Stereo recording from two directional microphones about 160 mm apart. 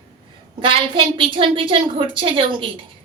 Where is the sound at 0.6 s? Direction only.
30° right (ahead or behind).